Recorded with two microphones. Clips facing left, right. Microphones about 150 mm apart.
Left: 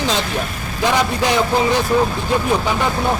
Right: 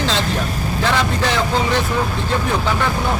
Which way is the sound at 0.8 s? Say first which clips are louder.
Left 3 dB; 15° left (ahead or behind).